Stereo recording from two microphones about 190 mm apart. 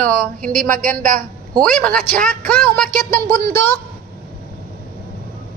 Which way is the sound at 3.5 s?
10° left (ahead or behind).